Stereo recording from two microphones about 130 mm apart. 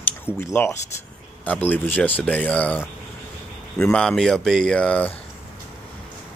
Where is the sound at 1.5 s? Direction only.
15° left (ahead or behind).